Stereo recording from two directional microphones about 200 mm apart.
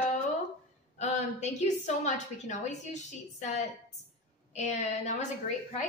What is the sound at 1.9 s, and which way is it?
A woman's voice, 35° left (ahead or behind).